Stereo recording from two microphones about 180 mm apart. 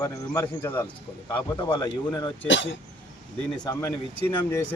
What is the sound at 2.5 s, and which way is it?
Speech, 90° left.